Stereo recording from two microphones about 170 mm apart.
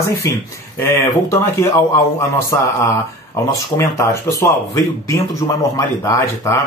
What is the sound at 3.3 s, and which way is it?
Speech, 20° left (ahead or behind).